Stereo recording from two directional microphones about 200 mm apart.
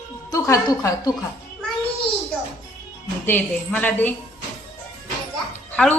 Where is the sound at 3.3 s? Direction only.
10° left (ahead or behind).